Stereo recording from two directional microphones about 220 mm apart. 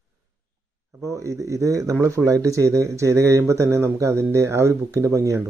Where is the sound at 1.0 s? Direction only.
15° right (ahead or behind).